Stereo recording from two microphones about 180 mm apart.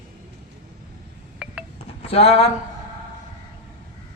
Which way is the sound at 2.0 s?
35° left (ahead or behind).